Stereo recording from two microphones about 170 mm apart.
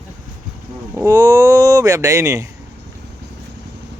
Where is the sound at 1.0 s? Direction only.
20° right (ahead or behind).